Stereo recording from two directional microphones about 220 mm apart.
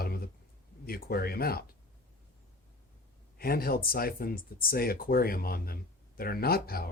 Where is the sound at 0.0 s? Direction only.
45° left (ahead or behind).